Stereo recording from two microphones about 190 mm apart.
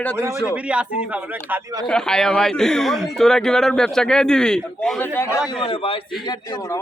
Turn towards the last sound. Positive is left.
turn(degrees=20)  # may be behind; listen again after turning